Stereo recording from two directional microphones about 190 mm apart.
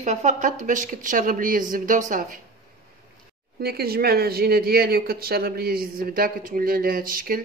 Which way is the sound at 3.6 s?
55° right (ahead or behind).